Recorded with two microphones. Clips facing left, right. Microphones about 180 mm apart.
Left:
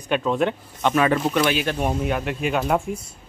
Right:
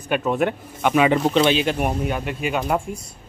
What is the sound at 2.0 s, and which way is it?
Speech, centre (ahead or behind).